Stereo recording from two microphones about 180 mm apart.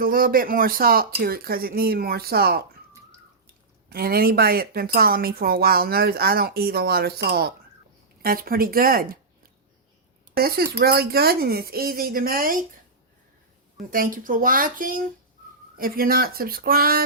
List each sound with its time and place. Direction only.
0.0 s a woman's voice: 55° right (ahead or behind)
3.8 s a woman's voice: 55° right (ahead or behind)
10.3 s a woman's voice: 60° right (ahead or behind)
13.7 s a woman's voice: 50° right (ahead or behind)